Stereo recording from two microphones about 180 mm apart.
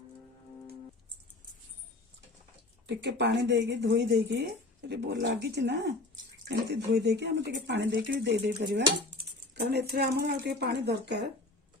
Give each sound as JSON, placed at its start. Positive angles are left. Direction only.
{"t": 2.8, "sound": "speech", "side_deg": -70}